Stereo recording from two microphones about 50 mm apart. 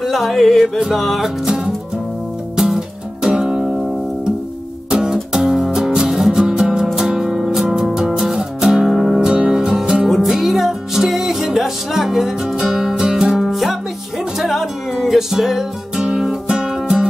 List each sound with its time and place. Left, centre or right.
0.0 s music: centre
2.5 s music: centre
4.9 s music: centre
10.0 s music: centre